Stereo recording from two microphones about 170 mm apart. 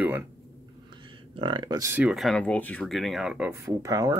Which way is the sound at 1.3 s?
30° right (ahead or behind).